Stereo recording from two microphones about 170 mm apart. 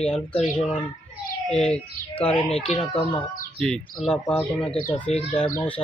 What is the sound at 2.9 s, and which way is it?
Speech, 5° left (ahead or behind).